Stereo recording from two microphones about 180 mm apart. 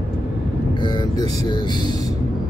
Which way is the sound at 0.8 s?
25° left (ahead or behind).